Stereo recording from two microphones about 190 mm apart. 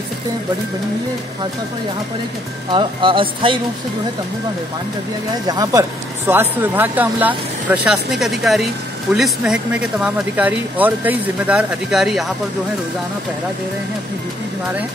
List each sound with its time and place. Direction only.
2.7 s speech: 25° right (ahead or behind)
5.5 s speech: 20° right (ahead or behind); by 12.3 s centre (ahead or behind)